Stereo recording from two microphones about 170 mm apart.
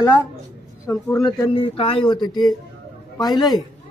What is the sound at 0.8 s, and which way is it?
Speech, 25° left (ahead or behind).